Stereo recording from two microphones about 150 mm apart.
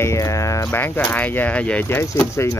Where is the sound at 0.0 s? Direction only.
20° left (ahead or behind).